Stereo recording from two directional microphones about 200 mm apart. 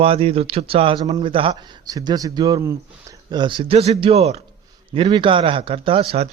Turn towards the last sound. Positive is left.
turn(degrees=-30)  # may be behind; listen again after turning